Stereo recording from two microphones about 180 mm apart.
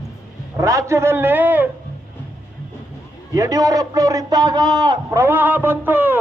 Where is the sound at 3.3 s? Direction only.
20° right (ahead or behind).